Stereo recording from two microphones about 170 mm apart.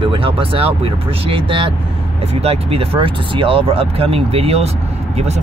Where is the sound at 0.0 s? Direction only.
30° right (ahead or behind).